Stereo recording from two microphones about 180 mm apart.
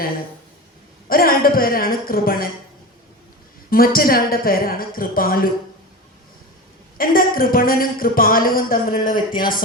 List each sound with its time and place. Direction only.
1.0 s speech: 55° left (ahead or behind)
3.7 s speech: 55° left (ahead or behind)
7.0 s speech: 55° left (ahead or behind)